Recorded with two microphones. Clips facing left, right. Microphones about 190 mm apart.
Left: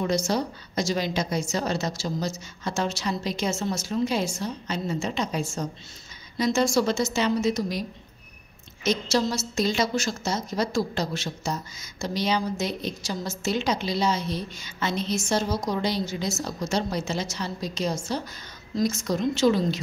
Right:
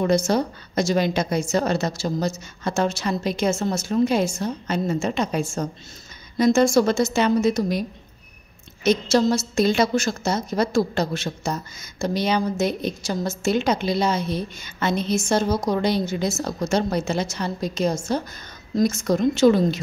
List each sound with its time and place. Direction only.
0.0 s a woman's voice: 55° right (ahead or behind)
8.8 s a woman's voice: 55° right (ahead or behind)